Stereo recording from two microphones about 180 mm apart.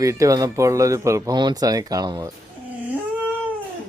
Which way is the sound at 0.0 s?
15° right (ahead or behind).